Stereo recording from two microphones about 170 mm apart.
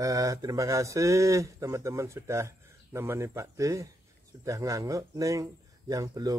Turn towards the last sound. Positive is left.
turn(degrees=-20)  # may be behind; listen again after turning